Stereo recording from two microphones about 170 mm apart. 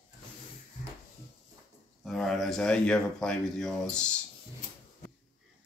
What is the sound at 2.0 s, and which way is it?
Speech, centre (ahead or behind).